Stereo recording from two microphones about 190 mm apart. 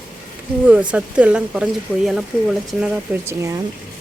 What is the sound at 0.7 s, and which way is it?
Speech, 5° right (ahead or behind).